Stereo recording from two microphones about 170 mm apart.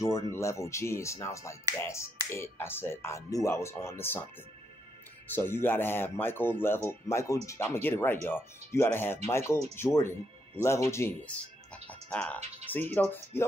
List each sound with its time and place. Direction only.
0.0 s speech: 15° left (ahead or behind)
5.3 s speech: 10° left (ahead or behind)